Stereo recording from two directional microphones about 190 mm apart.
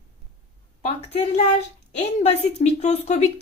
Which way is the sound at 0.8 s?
30° left (ahead or behind).